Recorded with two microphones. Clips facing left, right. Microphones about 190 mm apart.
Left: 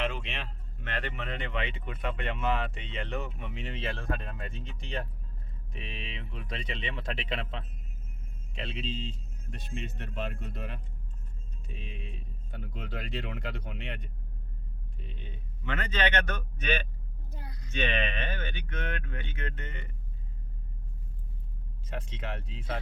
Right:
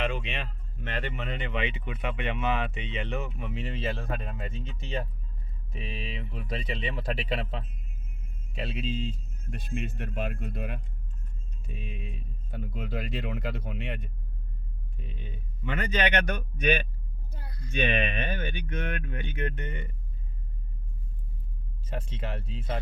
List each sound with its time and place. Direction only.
0.0 s speech: centre (ahead or behind)
6.8 s speech: 35° right (ahead or behind)
8.5 s speech: 5° right (ahead or behind)
11.9 s speech: 5° right (ahead or behind)
17.3 s a sound: 15° left (ahead or behind)
17.7 s speech: 15° right (ahead or behind)
21.9 s speech: 35° right (ahead or behind)